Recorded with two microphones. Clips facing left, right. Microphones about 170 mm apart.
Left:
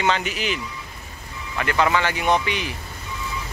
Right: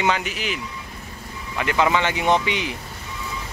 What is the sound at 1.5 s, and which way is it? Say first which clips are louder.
Speech: even; 15° right (ahead or behind).